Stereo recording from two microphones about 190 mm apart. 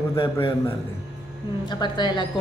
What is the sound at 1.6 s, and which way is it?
Speech, 25° left (ahead or behind).